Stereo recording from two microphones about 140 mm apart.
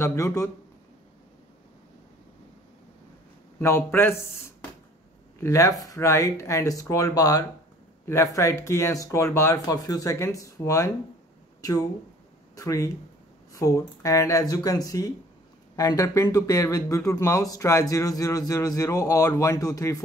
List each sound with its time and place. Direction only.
0.0 s speech: 20° left (ahead or behind)
3.5 s a man's voice: 15° left (ahead or behind)
5.4 s speech: 25° left (ahead or behind)
12.5 s speech: 25° left (ahead or behind)